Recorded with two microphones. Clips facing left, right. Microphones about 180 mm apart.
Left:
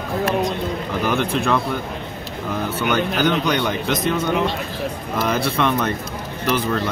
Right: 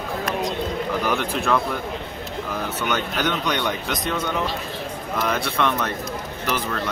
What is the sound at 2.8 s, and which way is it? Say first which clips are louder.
Speech: left 6 dB; centre (ahead or behind).